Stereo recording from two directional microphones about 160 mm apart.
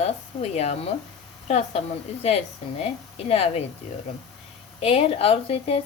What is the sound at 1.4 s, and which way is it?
Speech, 40° left (ahead or behind).